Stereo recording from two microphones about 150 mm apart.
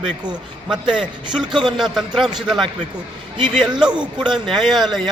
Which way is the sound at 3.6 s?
30° right (ahead or behind).